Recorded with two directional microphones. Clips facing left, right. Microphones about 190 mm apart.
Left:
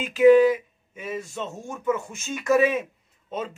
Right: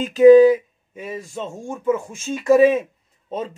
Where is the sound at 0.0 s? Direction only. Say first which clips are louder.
Right 6 dB; 40° right (ahead or behind).